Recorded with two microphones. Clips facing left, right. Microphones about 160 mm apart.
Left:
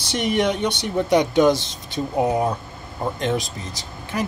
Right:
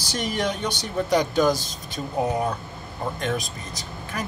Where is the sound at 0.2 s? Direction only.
70° left (ahead or behind).